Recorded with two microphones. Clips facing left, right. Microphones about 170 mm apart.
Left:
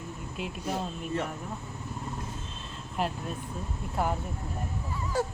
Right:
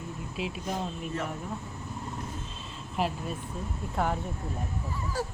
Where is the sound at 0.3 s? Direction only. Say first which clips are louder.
Even; centre (ahead or behind).